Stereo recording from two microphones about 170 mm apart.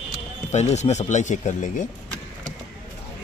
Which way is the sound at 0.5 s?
40° left (ahead or behind).